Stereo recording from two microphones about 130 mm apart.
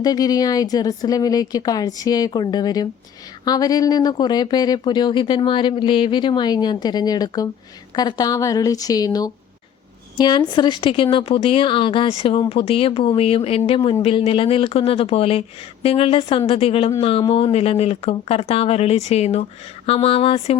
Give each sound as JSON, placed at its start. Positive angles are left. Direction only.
{"t": 0.0, "sound": "speech", "side_deg": 30}